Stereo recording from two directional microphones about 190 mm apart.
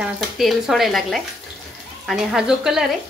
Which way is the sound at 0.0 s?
Centre (ahead or behind).